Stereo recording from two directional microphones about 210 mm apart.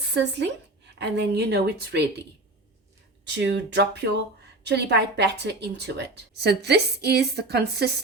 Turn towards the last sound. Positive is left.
turn(degrees=-50)  # may be behind; listen again after turning